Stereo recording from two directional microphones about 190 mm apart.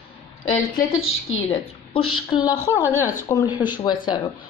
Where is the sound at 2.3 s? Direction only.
30° left (ahead or behind).